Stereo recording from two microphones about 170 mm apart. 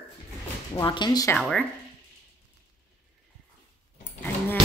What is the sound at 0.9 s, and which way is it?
Speech, 25° left (ahead or behind).